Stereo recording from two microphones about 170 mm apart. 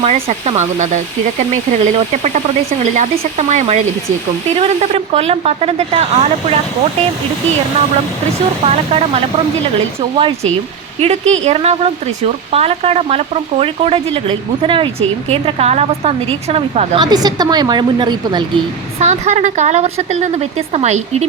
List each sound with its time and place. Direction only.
0.0 s speech: 40° right (ahead or behind)
8.6 s speech: 35° right (ahead or behind)
17.0 s a woman's voice: 25° right (ahead or behind)
18.9 s speech: 40° right (ahead or behind)